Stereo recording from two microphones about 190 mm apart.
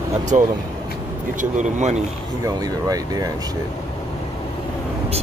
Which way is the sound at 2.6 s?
20° right (ahead or behind).